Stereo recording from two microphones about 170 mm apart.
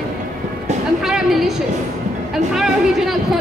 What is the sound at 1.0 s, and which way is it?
A woman's voice, centre (ahead or behind).